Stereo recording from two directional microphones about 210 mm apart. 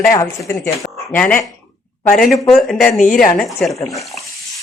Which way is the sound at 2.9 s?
40° left (ahead or behind).